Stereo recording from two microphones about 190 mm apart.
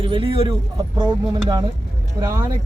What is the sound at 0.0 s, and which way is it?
Speech, 30° right (ahead or behind).